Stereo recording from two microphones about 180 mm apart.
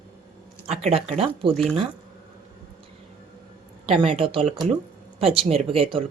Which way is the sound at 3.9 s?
30° right (ahead or behind).